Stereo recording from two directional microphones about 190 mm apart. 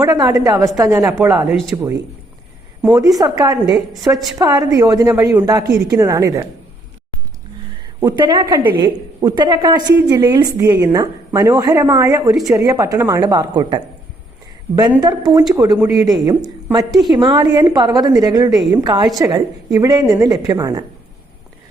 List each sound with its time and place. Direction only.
0.0 s a woman's voice: 20° right (ahead or behind)
1.0 s a woman's voice: 5° right (ahead or behind)
1.7 s a woman's voice: 15° right (ahead or behind)
7.8 s a woman's voice: 20° right (ahead or behind)
15.0 s a woman's voice: 20° right (ahead or behind)
16.3 s a woman's voice: 10° right (ahead or behind)
17.1 s a woman's voice: 25° right (ahead or behind)